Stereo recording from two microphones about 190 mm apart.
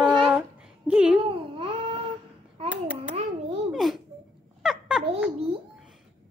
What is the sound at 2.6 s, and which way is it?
Hands, 10° right (ahead or behind).